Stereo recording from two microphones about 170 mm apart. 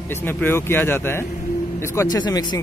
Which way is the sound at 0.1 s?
10° left (ahead or behind).